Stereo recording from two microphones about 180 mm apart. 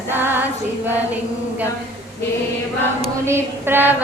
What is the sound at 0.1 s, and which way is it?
Female singing, 10° right (ahead or behind).